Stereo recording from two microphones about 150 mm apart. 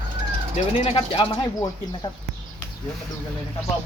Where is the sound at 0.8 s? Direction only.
40° left (ahead or behind).